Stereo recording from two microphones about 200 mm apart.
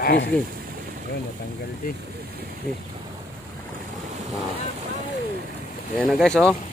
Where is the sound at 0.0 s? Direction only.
55° left (ahead or behind).